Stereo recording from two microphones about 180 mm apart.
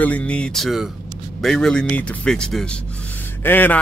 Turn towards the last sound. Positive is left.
turn(degrees=10)  # may be behind; listen again after turning